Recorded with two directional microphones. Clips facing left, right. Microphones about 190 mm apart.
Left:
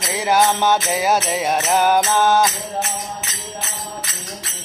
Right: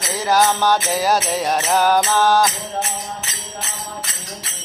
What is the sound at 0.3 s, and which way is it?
Music, 20° left (ahead or behind).